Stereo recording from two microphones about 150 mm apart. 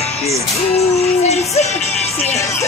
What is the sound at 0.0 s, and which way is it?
Music, 45° left (ahead or behind).